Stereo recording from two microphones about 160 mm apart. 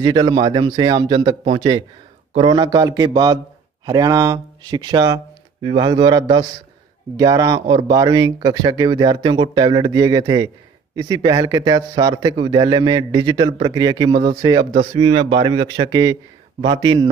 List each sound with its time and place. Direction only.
0.0 s a man's voice: 25° right (ahead or behind)